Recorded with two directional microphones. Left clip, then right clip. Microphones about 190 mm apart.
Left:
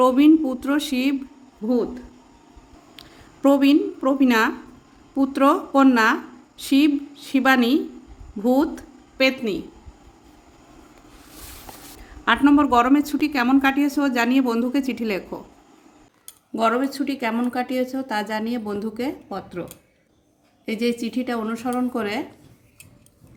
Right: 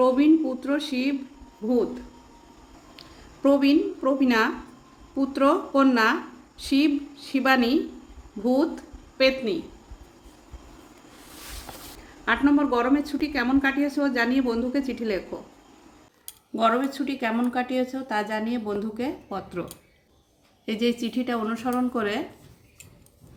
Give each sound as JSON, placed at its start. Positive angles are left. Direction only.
{"t": 0.0, "sound": "speech", "side_deg": 50}
{"t": 1.6, "sound": "a woman's voice", "side_deg": 35}
{"t": 2.9, "sound": "a woman's voice", "side_deg": 45}
{"t": 12.2, "sound": "speech", "side_deg": 50}
{"t": 16.6, "sound": "a woman's voice", "side_deg": 25}
{"t": 20.7, "sound": "a woman's voice", "side_deg": 20}